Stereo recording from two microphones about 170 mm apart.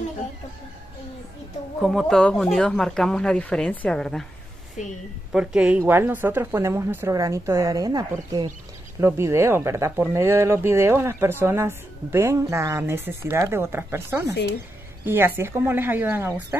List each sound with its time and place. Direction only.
1.8 s speech: centre (ahead or behind)
5.3 s speech: 5° right (ahead or behind)